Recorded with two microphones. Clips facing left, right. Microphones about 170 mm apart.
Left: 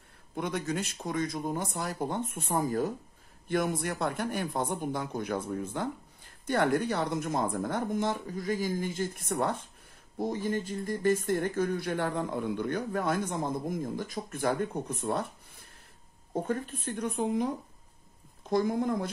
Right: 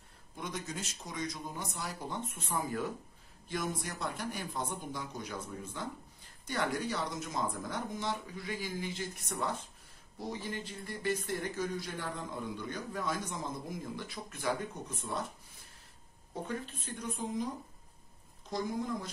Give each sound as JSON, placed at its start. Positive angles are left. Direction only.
{"t": 0.4, "sound": "speech", "side_deg": 60}
{"t": 3.4, "sound": "speech", "side_deg": 60}
{"t": 16.4, "sound": "speech", "side_deg": 50}
{"t": 18.5, "sound": "speech", "side_deg": 55}